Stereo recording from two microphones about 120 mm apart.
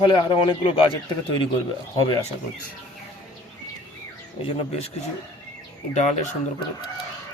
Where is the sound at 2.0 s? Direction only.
40° left (ahead or behind).